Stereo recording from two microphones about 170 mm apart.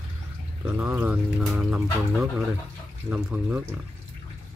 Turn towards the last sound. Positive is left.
turn(degrees=-10)  # may be behind; listen again after turning